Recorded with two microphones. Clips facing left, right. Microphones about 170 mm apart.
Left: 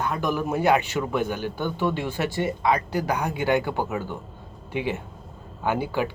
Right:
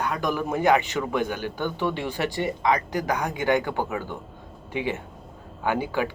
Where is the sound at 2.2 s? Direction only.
15° right (ahead or behind).